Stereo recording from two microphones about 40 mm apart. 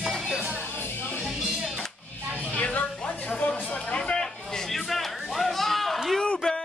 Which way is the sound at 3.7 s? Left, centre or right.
Left.